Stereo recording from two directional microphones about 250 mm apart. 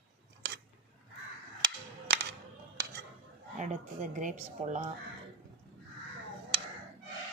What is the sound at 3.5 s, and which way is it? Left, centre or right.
Speech, right.